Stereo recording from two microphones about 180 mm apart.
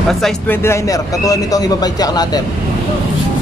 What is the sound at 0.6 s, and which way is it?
Speech, 15° left (ahead or behind).